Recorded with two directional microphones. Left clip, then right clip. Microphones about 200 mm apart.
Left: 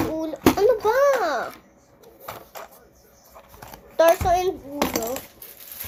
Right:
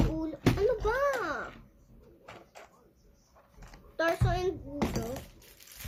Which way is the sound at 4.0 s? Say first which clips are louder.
Left 13 dB; 15° right (ahead or behind).